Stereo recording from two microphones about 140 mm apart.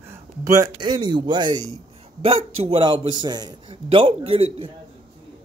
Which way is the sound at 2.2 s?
45° right (ahead or behind).